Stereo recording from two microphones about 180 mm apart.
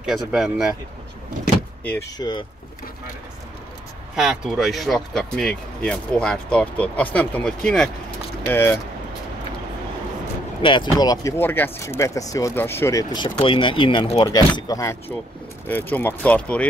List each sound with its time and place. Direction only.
0.0 s speech: centre (ahead or behind)
2.1 s speech: 25° left (ahead or behind)
4.1 s speech: 5° right (ahead or behind)
10.6 s speech: 25° left (ahead or behind)
14.3 s speech: 20° left (ahead or behind)